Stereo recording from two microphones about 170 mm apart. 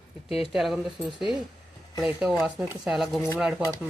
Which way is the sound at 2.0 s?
5° right (ahead or behind).